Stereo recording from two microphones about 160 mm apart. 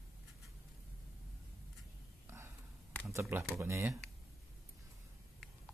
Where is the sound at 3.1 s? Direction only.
15° right (ahead or behind).